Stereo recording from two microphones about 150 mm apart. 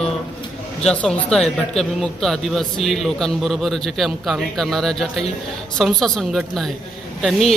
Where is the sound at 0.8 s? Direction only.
5° left (ahead or behind).